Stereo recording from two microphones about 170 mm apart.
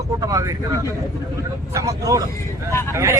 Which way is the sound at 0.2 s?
20° right (ahead or behind).